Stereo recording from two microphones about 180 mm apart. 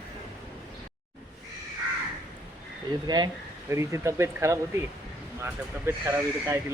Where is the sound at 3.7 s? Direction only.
15° right (ahead or behind).